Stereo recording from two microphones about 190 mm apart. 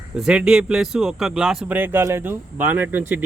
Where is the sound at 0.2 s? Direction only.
5° right (ahead or behind).